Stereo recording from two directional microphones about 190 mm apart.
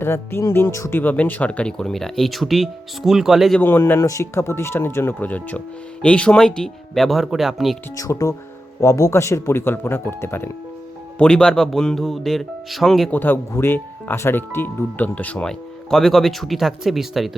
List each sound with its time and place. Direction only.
0.0 s speech: 10° left (ahead or behind)
3.6 s speech: 10° left (ahead or behind)
7.9 s speech: 15° left (ahead or behind); by 17.3 s centre (ahead or behind)